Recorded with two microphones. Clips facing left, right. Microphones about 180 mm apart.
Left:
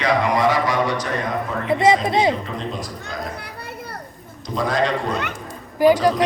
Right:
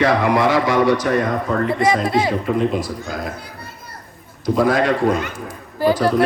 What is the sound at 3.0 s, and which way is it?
Children playing, 65° left (ahead or behind).